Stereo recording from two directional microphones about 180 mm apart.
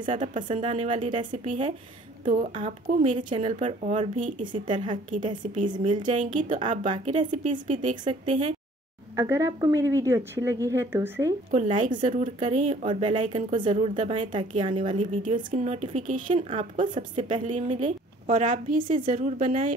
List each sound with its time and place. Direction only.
0.0 s speech: 25° right (ahead or behind)
2.5 s speech: 30° right (ahead or behind)
5.4 s speech: 45° right (ahead or behind)
5.7 s speech: 25° right (ahead or behind)
7.4 s speech: 45° right (ahead or behind)
8.0 s speech: 30° right (ahead or behind)
9.1 s a woman's voice: 15° right (ahead or behind)
11.5 s a woman's voice: 30° right (ahead or behind)
11.8 s speech: 45° right (ahead or behind)
12.4 s speech: 30° right (ahead or behind)
14.2 s speech: 25° right (ahead or behind); by 16.2 s 45° right (ahead or behind)
16.3 s speech: 30° right (ahead or behind)
16.7 s speech: 45° right (ahead or behind)
17.1 s a woman's voice: 30° right (ahead or behind)